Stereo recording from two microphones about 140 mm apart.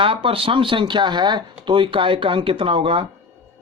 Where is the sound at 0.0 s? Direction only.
40° right (ahead or behind).